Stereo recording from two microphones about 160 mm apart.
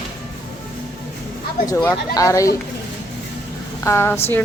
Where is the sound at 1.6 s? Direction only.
15° left (ahead or behind).